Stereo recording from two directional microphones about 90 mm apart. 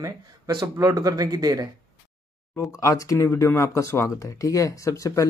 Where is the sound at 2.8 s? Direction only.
35° left (ahead or behind).